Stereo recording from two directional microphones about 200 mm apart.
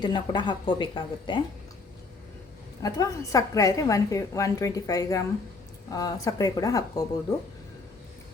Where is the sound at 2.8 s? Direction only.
15° left (ahead or behind).